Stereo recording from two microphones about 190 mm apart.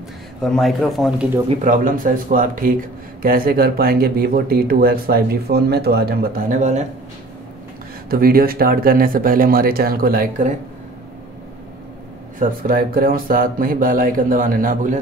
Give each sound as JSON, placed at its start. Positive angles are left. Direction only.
{"t": 0.4, "sound": "speech", "side_deg": 0}
{"t": 1.6, "sound": "speech", "side_deg": -45}
{"t": 8.1, "sound": "speech", "side_deg": -50}
{"t": 12.4, "sound": "speech", "side_deg": -45}